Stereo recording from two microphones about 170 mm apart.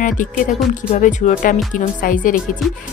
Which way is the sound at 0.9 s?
50° left (ahead or behind).